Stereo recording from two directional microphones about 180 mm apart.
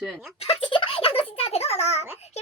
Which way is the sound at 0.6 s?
30° left (ahead or behind).